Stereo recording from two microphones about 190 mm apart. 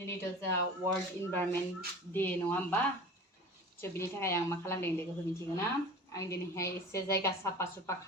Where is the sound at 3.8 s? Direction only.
15° left (ahead or behind).